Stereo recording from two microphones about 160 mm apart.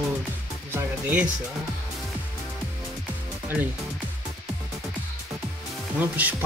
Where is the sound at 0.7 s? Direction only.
10° right (ahead or behind).